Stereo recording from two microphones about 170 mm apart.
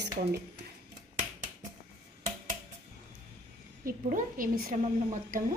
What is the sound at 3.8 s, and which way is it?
A woman's voice, 55° right (ahead or behind).